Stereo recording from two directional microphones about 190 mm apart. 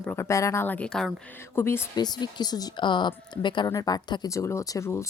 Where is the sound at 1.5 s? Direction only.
15° left (ahead or behind).